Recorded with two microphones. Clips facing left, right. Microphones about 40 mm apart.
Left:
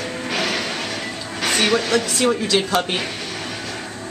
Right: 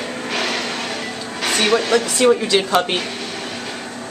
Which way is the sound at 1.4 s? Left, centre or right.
Centre.